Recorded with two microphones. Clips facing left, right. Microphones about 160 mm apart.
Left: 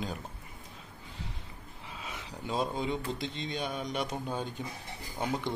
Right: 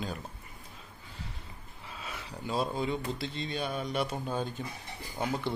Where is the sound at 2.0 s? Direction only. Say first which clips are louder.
Right 1 dB; 15° left (ahead or behind).